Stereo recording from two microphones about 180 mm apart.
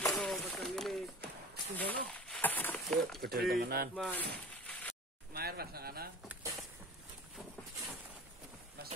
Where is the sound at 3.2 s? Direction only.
60° right (ahead or behind).